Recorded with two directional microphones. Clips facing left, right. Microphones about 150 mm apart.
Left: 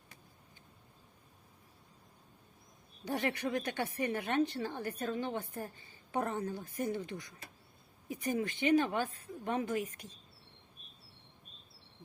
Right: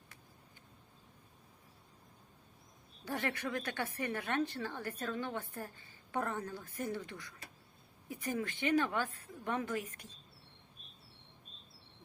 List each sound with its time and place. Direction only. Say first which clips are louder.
3.0 s a woman's voice: left 3 dB; 20° left (ahead or behind)